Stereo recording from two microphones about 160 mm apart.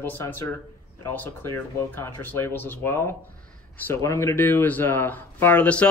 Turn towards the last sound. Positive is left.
turn(degrees=10)  # may be behind; listen again after turning